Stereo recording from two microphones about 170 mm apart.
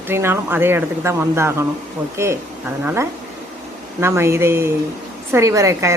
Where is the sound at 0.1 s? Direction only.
15° right (ahead or behind).